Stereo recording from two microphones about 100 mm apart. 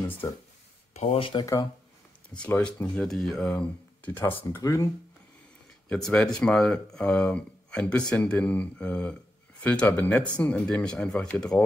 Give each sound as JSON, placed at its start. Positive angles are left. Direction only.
{"t": 0.0, "sound": "speech", "side_deg": 20}
{"t": 0.9, "sound": "speech", "side_deg": 80}
{"t": 1.4, "sound": "speech", "side_deg": 35}
{"t": 2.3, "sound": "speech", "side_deg": 10}
{"t": 4.6, "sound": "speech", "side_deg": 35}
{"t": 5.9, "sound": "speech", "side_deg": 5}